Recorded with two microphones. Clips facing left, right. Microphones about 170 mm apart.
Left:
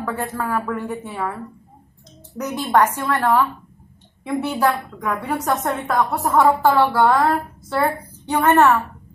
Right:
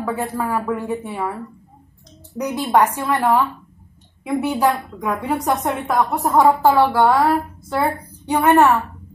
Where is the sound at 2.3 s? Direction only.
15° right (ahead or behind).